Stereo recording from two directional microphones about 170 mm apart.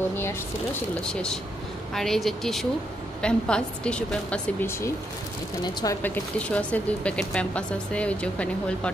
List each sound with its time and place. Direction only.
0.1 s speech: 15° left (ahead or behind)
5.6 s speech: 25° left (ahead or behind)
6.0 s speech: 10° left (ahead or behind)